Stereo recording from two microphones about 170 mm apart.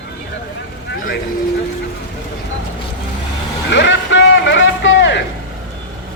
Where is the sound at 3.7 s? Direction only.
90° left.